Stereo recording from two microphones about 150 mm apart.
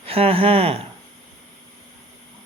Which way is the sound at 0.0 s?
40° right (ahead or behind).